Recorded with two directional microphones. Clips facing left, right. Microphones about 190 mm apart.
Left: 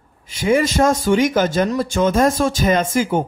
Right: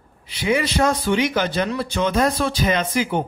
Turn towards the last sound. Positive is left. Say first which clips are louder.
# left 4 dB
turn(degrees=45)  # may be behind; listen again after turning